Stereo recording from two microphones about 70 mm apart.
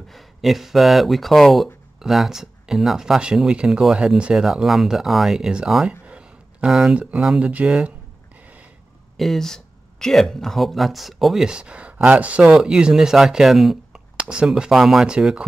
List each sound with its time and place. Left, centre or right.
0.1 s speech: centre
5.9 s a sound: centre
6.7 s speech: centre
9.1 s speech: centre
11.4 s speech: centre
12.4 s speech: centre
14.2 s speech: centre
14.5 s speech: centre
15.1 s speech: centre